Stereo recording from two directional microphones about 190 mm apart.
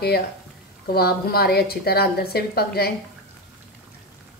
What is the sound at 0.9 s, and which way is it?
A woman's voice, 55° left (ahead or behind).